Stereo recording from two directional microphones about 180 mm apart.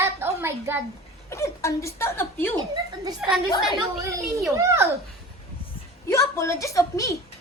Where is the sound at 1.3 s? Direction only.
15° left (ahead or behind).